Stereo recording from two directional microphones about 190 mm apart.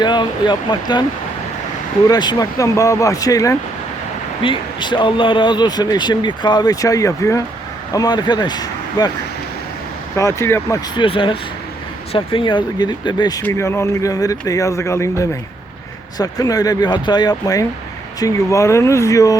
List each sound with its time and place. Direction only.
0.0 s speech: 25° left (ahead or behind)
2.0 s speech: 20° left (ahead or behind)
10.2 s speech: 15° left (ahead or behind)